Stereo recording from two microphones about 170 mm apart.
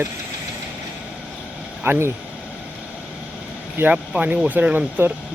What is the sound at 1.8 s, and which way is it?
Speech, 15° right (ahead or behind).